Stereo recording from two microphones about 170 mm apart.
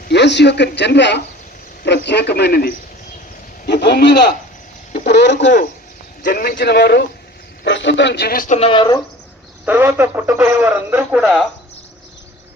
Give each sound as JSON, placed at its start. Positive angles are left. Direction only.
{"t": 0.1, "sound": "a man's voice", "side_deg": 90}
{"t": 3.7, "sound": "a man's voice", "side_deg": 80}
{"t": 6.2, "sound": "a man's voice", "side_deg": 55}
{"t": 7.6, "sound": "a man's voice", "side_deg": 90}
{"t": 8.5, "sound": "speech", "side_deg": 35}
{"t": 9.6, "sound": "a man's voice", "side_deg": -10}